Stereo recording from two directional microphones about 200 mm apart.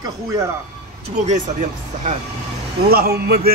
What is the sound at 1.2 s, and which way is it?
Speech, 35° right (ahead or behind).